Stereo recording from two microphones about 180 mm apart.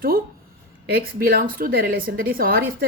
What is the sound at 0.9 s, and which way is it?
A woman's voice, 60° right (ahead or behind).